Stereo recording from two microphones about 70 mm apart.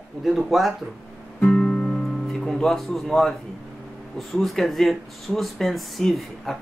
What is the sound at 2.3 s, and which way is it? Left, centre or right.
Speech, centre.